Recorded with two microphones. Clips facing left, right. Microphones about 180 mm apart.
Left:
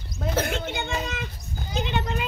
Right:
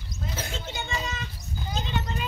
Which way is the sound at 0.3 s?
65° left (ahead or behind).